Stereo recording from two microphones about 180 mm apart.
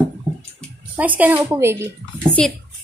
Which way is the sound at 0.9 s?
10° right (ahead or behind).